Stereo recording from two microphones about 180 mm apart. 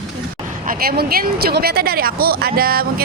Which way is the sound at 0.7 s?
55° right (ahead or behind).